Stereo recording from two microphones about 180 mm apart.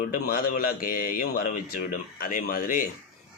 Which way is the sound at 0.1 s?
55° left (ahead or behind).